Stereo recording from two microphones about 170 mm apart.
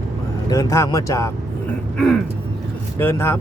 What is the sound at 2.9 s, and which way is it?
Speech, 15° left (ahead or behind).